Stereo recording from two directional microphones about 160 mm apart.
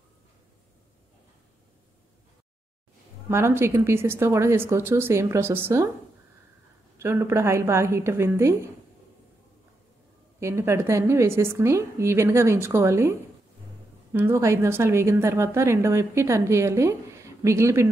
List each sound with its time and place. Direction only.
3.3 s a woman's voice: 15° right (ahead or behind)
7.0 s a woman's voice: 15° right (ahead or behind)
10.4 s a woman's voice: 15° right (ahead or behind)
14.1 s a woman's voice: 15° right (ahead or behind)